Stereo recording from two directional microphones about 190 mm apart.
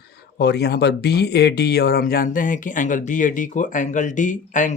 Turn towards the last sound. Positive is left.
turn(degrees=40)  # may be behind; listen again after turning